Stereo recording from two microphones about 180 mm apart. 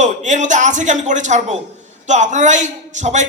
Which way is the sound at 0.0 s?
45° right (ahead or behind).